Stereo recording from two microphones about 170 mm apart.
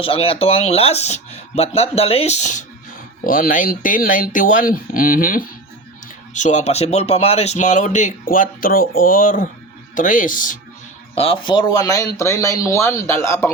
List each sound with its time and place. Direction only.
0.0 s speech: 35° left (ahead or behind); by 5.5 s 55° left (ahead or behind)
6.3 s speech: 45° left (ahead or behind)
11.1 s speech: 35° left (ahead or behind); by 13.5 s 15° left (ahead or behind)